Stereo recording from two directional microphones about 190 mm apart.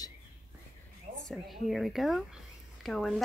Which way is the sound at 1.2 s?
Centre (ahead or behind).